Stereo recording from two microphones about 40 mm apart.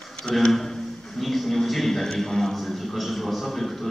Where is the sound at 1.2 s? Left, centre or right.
Centre.